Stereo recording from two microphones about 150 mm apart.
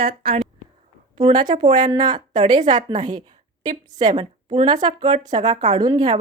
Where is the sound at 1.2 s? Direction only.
30° right (ahead or behind).